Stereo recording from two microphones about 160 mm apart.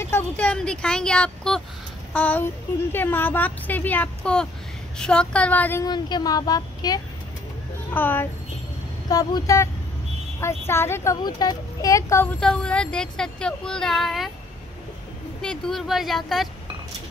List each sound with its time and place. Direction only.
0.0 s speech: 10° left (ahead or behind)
5.9 s speech: 25° left (ahead or behind)
7.9 s speech: 10° left (ahead or behind)
9.1 s speech: 25° left (ahead or behind)
11.2 s speech: 25° left (ahead or behind); by 14.3 s centre (ahead or behind)
15.4 s speech: 5° left (ahead or behind)